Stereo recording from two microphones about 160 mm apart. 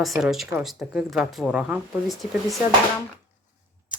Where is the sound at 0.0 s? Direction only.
Centre (ahead or behind).